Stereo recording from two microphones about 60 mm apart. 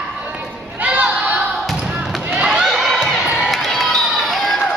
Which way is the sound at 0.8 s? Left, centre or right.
Right.